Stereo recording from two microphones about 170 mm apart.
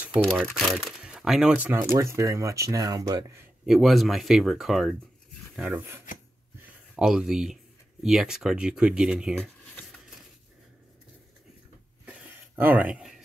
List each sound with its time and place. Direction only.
0.6 s speech: centre (ahead or behind); by 3.4 s 20° right (ahead or behind)
3.6 s speech: centre (ahead or behind)
12.1 s a sound: 10° right (ahead or behind)